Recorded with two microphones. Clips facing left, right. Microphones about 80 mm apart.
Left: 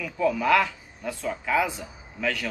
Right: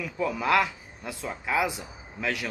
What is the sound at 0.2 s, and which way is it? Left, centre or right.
Speech, centre.